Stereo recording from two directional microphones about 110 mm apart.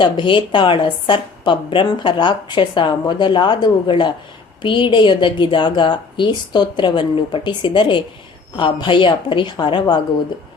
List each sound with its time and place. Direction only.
0.0 s a woman's voice: 50° left (ahead or behind)